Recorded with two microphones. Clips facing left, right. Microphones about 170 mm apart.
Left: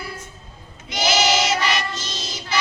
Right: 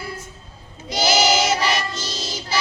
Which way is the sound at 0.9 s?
35° right (ahead or behind).